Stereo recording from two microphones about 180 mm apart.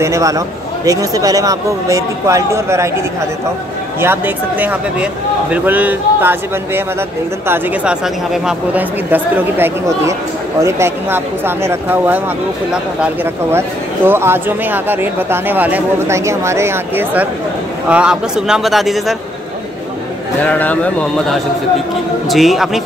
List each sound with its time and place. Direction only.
0.0 s speech: 15° right (ahead or behind)
4.0 s a man's voice: 10° right (ahead or behind)
20.4 s a man's voice: 10° left (ahead or behind)